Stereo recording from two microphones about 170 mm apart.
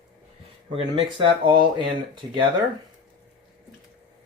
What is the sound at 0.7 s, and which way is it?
Speech, 30° right (ahead or behind).